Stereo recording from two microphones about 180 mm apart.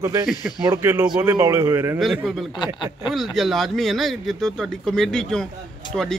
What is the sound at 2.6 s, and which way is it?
Speech, 25° left (ahead or behind).